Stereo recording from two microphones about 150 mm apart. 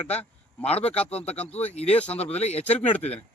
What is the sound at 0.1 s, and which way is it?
Speech, 45° left (ahead or behind).